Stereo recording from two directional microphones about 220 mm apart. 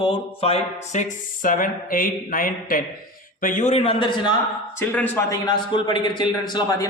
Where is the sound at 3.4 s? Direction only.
35° left (ahead or behind).